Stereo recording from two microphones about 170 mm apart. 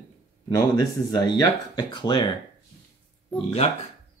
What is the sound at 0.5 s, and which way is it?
Speech, 25° left (ahead or behind).